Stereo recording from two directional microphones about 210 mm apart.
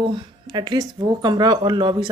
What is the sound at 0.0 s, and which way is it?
Speech, 20° right (ahead or behind).